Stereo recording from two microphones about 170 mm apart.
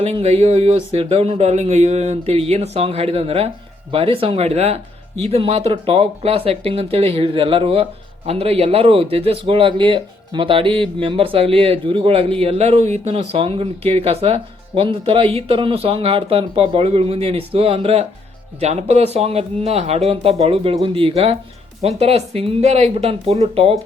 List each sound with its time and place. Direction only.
0.0 s a man's voice: 35° right (ahead or behind)